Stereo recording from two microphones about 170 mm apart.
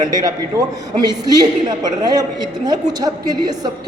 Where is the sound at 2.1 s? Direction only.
25° right (ahead or behind).